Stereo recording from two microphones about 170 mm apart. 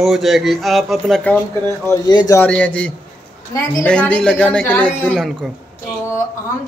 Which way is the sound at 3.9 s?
5° left (ahead or behind).